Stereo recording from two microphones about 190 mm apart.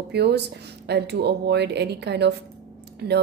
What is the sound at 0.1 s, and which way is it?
Speech, 60° right (ahead or behind).